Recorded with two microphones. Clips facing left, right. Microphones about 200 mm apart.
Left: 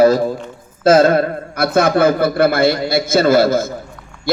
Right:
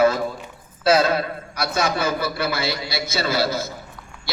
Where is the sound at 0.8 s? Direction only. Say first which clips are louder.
Left 7 dB; 50° left (ahead or behind).